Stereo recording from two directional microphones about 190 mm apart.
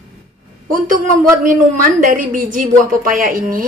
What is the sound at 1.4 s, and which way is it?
A woman's voice, 45° right (ahead or behind).